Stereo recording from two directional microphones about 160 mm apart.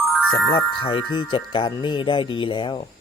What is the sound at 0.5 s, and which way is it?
Speech, 30° left (ahead or behind).